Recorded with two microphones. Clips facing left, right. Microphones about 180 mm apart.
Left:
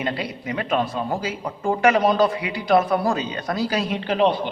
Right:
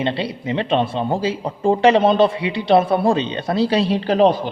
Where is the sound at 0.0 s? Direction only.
30° right (ahead or behind).